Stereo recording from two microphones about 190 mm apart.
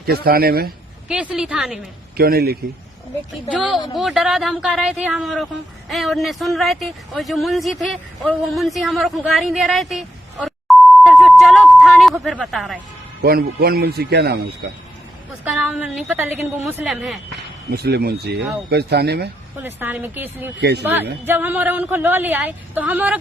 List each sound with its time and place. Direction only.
0.0 s speech: 55° right (ahead or behind)
1.0 s a woman's voice: 5° right (ahead or behind)
2.1 s speech: 55° right (ahead or behind)
3.9 s a woman's voice: centre (ahead or behind)
13.2 s a man's voice: 55° right (ahead or behind)
15.4 s a woman's voice: 5° right (ahead or behind)
17.7 s a man's voice: 55° right (ahead or behind)
19.5 s speech: 10° right (ahead or behind)
20.6 s a man's voice: 60° right (ahead or behind)
20.8 s speech: 10° right (ahead or behind)